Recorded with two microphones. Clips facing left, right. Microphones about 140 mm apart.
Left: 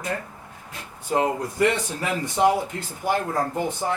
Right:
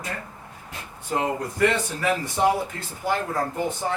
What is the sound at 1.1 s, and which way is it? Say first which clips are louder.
Speech: left 3 dB; 20° left (ahead or behind).